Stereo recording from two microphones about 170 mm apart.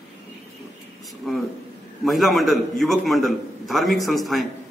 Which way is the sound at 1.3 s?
Centre (ahead or behind).